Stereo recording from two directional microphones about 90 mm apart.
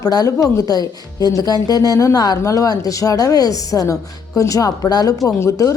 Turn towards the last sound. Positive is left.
turn(degrees=35)  # may be behind; listen again after turning